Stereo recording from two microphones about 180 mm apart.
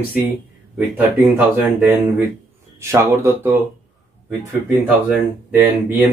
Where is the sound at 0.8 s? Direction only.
10° right (ahead or behind).